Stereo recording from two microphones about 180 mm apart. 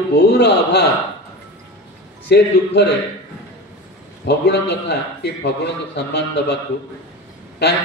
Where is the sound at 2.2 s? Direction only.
70° left (ahead or behind).